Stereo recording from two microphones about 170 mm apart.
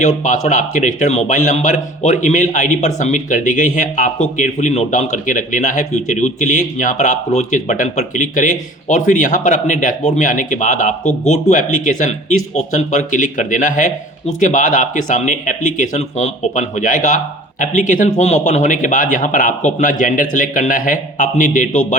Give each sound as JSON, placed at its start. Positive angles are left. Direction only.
{"t": 0.0, "sound": "speech", "side_deg": 45}